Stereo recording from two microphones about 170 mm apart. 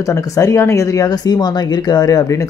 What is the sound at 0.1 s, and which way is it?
Speech, 15° left (ahead or behind).